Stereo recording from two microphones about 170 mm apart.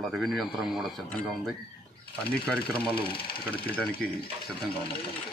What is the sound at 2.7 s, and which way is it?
Speech, 30° left (ahead or behind).